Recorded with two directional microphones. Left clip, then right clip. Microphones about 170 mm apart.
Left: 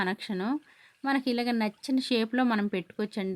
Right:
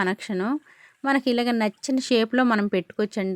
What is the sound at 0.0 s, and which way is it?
A woman's voice, 35° right (ahead or behind).